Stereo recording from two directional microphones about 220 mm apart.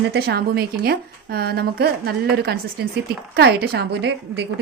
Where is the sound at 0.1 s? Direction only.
45° right (ahead or behind).